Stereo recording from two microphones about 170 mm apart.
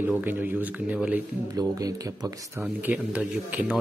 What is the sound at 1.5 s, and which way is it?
Speech, 20° right (ahead or behind).